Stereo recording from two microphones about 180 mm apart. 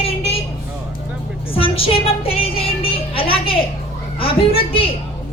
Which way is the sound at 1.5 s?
30° left (ahead or behind).